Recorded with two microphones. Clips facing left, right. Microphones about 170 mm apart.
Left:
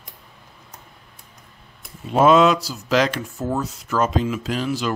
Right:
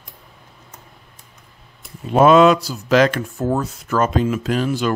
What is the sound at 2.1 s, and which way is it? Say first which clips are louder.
Speech: right 3 dB; 55° right (ahead or behind).